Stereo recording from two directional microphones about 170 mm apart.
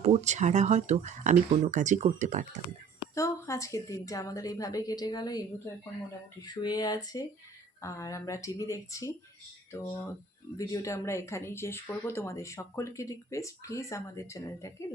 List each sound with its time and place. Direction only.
0.0 s speech: 40° right (ahead or behind)
3.2 s a woman's voice: 15° left (ahead or behind)